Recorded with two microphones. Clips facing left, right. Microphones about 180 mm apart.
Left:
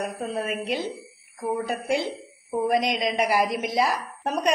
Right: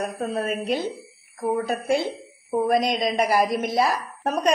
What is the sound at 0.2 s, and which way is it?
A woman's voice, 40° right (ahead or behind).